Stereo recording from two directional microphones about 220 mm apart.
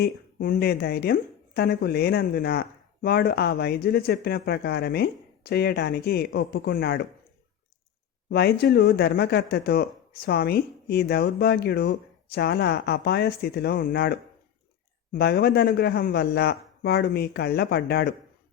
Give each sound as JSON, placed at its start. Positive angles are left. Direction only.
{"t": 0.0, "sound": "speech", "side_deg": 40}
{"t": 8.3, "sound": "speech", "side_deg": 45}